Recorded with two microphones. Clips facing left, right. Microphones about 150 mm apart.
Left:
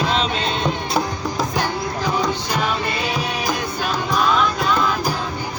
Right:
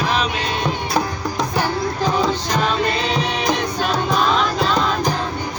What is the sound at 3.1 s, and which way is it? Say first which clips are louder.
Music: right 3 dB; 5° left (ahead or behind).